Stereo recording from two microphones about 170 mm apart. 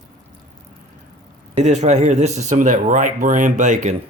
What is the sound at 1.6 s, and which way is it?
Speech, 40° right (ahead or behind).